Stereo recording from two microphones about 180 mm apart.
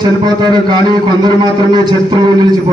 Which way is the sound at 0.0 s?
25° right (ahead or behind).